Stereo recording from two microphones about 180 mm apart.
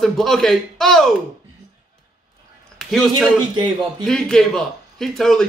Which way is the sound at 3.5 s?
25° right (ahead or behind).